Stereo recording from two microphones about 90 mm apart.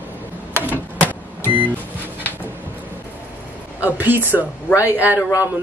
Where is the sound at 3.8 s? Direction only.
20° right (ahead or behind).